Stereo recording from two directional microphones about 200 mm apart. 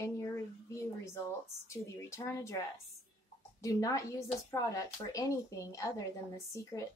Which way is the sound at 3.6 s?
15° left (ahead or behind).